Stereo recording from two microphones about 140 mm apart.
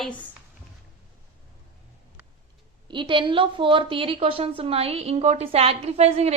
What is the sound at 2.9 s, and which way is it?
A woman's voice, 35° right (ahead or behind).